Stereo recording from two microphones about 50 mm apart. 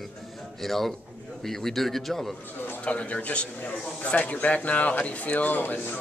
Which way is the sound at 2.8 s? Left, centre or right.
Left.